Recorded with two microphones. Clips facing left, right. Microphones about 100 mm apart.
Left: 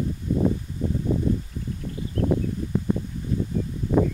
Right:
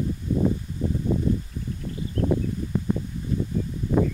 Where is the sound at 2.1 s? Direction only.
5° left (ahead or behind).